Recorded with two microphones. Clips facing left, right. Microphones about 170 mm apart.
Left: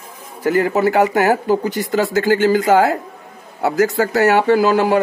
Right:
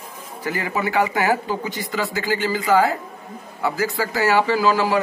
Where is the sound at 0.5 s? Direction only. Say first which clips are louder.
Left 7 dB; 45° left (ahead or behind).